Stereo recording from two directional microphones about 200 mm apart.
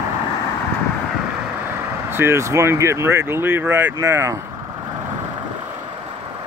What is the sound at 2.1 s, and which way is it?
Speech, 10° right (ahead or behind).